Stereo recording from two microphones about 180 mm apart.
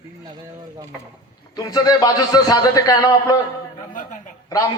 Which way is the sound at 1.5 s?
20° left (ahead or behind).